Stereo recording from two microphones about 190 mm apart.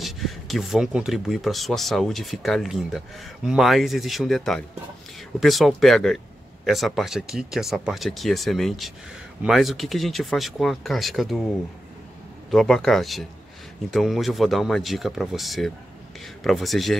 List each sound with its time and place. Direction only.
0.0 s speech: centre (ahead or behind)
12.4 s speech: centre (ahead or behind)